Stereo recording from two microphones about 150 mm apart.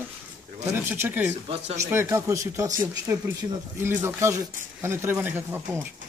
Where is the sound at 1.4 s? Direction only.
45° right (ahead or behind).